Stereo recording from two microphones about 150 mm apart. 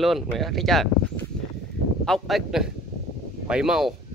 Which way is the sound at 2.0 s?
Centre (ahead or behind).